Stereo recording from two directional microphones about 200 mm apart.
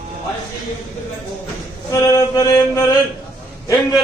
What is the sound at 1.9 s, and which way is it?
Mantra, 15° left (ahead or behind).